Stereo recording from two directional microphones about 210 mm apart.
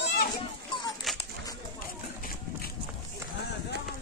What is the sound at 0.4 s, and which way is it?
Children playing, 20° left (ahead or behind).